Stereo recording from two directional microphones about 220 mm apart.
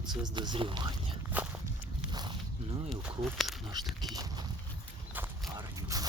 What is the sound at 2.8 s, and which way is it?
Speech, centre (ahead or behind).